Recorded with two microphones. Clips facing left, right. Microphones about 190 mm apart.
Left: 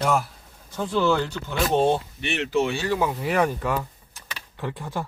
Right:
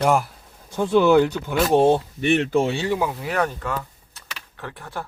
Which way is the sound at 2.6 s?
25° right (ahead or behind).